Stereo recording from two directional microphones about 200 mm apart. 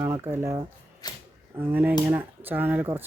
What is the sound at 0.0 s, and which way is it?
Speech, 10° right (ahead or behind).